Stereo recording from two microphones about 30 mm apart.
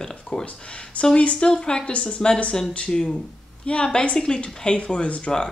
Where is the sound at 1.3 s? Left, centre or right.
Left.